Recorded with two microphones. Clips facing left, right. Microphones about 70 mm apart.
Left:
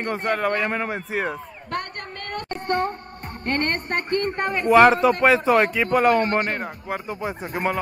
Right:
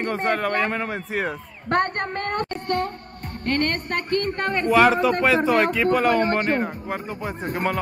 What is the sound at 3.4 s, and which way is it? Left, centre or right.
Speech, left.